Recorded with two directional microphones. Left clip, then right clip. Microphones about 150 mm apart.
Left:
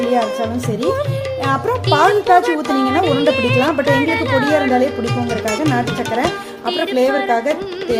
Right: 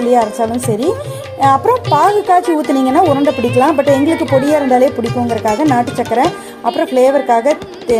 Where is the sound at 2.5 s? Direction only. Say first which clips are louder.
Right 3 dB; centre (ahead or behind).